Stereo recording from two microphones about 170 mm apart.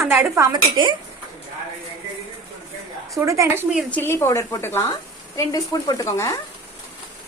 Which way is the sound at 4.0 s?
15° left (ahead or behind).